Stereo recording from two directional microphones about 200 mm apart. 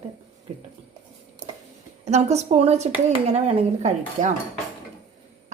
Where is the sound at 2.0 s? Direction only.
35° right (ahead or behind).